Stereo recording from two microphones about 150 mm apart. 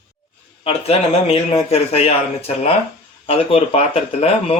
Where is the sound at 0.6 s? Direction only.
40° left (ahead or behind).